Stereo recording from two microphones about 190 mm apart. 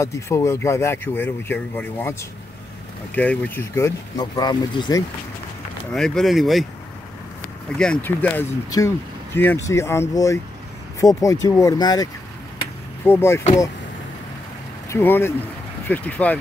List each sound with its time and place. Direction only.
0.0 s speech: 15° left (ahead or behind)
3.2 s speech: 10° left (ahead or behind)
5.9 s speech: centre (ahead or behind)
7.7 s speech: 5° left (ahead or behind)
14.9 s speech: 10° left (ahead or behind)